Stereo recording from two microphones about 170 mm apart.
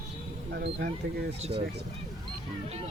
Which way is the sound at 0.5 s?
75° right (ahead or behind).